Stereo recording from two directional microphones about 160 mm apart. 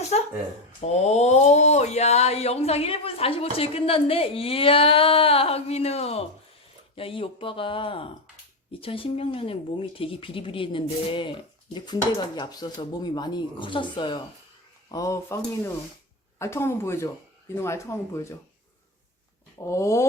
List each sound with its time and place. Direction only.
0.1 s a sound: 45° left (ahead or behind)
0.8 s speech: 45° left (ahead or behind); by 15.4 s 20° left (ahead or behind)
16.4 s speech: 15° left (ahead or behind)
19.6 s speech: 20° left (ahead or behind)